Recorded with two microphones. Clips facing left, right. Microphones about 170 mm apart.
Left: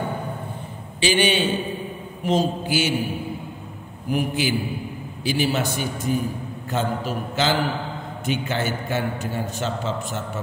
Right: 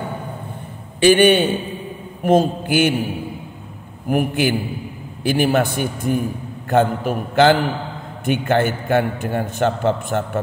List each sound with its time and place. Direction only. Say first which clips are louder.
1.0 s a man's voice: right 8 dB; 55° right (ahead or behind)
4.1 s a man's voice: right 5 dB; 55° right (ahead or behind)